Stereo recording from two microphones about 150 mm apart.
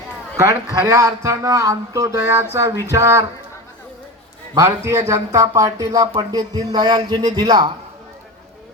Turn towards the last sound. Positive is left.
turn(degrees=-30)  # may be behind; listen again after turning